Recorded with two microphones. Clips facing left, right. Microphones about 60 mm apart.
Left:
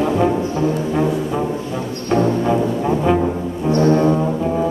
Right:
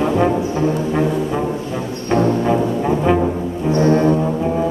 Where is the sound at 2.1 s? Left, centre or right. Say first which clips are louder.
Right 1 dB; centre.